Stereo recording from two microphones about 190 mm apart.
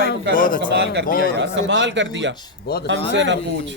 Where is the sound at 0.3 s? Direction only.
45° left (ahead or behind).